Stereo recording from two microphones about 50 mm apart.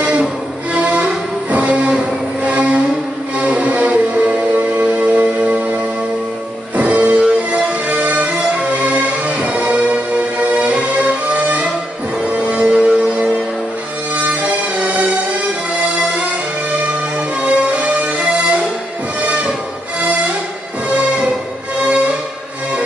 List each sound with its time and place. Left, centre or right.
0.0 s music: right
6.8 s music: right
14.1 s music: right
17.4 s music: right
21.8 s music: right